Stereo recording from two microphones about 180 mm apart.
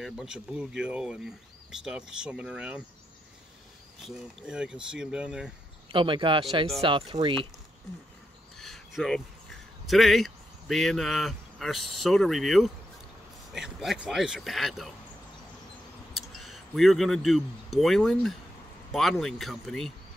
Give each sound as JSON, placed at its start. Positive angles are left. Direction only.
{"t": 0.0, "sound": "speech", "side_deg": 0}
{"t": 4.0, "sound": "speech", "side_deg": -5}
{"t": 5.9, "sound": "speech", "side_deg": -30}
{"t": 8.5, "sound": "a sound", "side_deg": 0}
{"t": 9.8, "sound": "speech", "side_deg": 0}
{"t": 16.1, "sound": "speech", "side_deg": 0}